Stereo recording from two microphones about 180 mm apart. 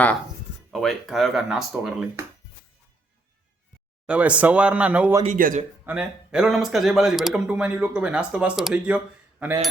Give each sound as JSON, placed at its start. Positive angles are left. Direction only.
{"t": 0.7, "sound": "a man's voice", "side_deg": 0}
{"t": 4.0, "sound": "speech", "side_deg": -5}
{"t": 5.2, "sound": "speech", "side_deg": -45}
{"t": 5.8, "sound": "a man's voice", "side_deg": -5}